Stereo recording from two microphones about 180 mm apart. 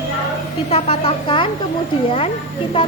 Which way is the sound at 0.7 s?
30° left (ahead or behind).